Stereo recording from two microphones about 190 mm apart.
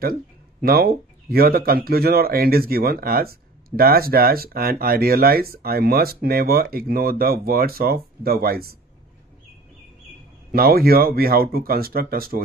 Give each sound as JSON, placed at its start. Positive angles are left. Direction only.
{"t": 0.6, "sound": "speech", "side_deg": -55}
{"t": 10.5, "sound": "speech", "side_deg": -50}